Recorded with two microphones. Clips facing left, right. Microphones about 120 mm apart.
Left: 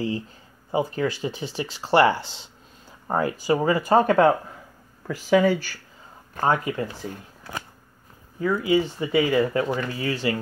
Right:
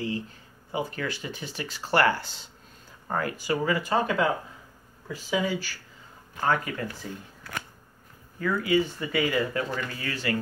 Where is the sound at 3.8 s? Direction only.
45° left (ahead or behind).